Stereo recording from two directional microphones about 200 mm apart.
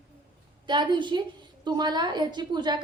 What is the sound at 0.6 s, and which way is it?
A woman's voice, 20° right (ahead or behind).